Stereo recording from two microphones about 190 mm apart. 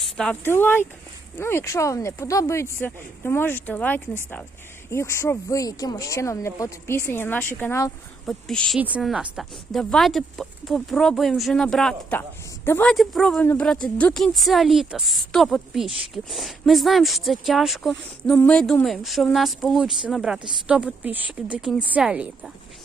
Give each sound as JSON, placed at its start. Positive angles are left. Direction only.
{"t": 0.2, "sound": "speech", "side_deg": 5}
{"t": 8.3, "sound": "a woman's voice", "side_deg": 5}